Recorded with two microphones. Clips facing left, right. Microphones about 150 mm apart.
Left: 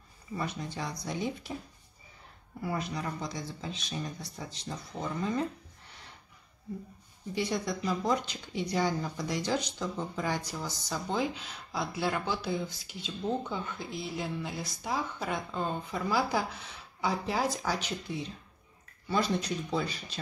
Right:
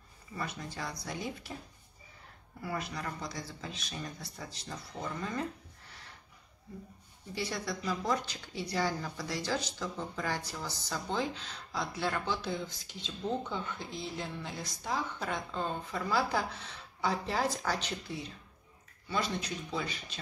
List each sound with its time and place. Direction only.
0.4 s speech: 20° left (ahead or behind)
2.6 s speech: 20° left (ahead or behind)
7.3 s speech: 20° left (ahead or behind)
19.0 s speech: 35° left (ahead or behind)